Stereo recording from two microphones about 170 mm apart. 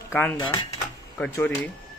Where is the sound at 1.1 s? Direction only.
10° left (ahead or behind).